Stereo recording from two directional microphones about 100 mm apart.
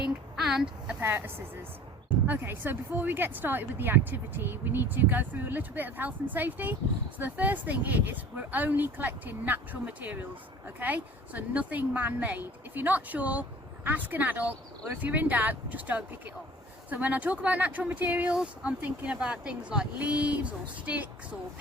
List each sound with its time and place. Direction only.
0.3 s speech: 5° right (ahead or behind)
1.0 s speech: 25° right (ahead or behind)